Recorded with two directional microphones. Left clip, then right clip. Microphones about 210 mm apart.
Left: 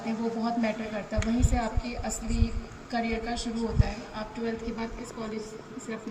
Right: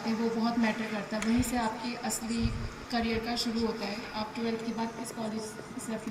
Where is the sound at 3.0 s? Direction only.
45° left (ahead or behind).